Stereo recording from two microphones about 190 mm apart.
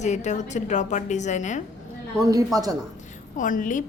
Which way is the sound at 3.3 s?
45° left (ahead or behind).